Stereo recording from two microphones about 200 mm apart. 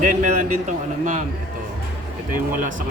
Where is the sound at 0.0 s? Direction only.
40° right (ahead or behind).